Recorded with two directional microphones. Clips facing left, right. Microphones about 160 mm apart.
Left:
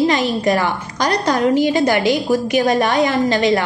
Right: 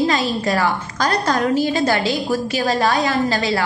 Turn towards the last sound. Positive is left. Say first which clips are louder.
# left 4 dB
turn(degrees=20)  # may be behind; listen again after turning